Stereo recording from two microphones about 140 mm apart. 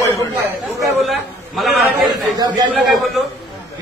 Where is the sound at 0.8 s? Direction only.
Centre (ahead or behind).